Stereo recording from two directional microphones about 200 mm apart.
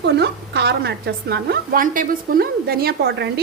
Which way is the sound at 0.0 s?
55° right (ahead or behind).